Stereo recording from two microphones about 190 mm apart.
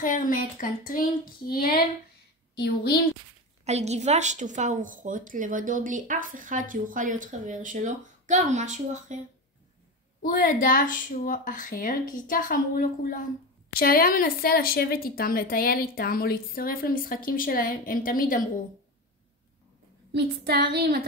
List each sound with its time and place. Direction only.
0.0 s a woman's voice: 45° left (ahead or behind)
3.6 s a woman's voice: 35° right (ahead or behind)
10.2 s speech: 45° left (ahead or behind)
20.1 s speech: 60° right (ahead or behind)